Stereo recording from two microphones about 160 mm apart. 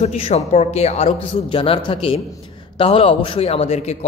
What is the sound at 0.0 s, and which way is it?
A man's voice, 40° left (ahead or behind).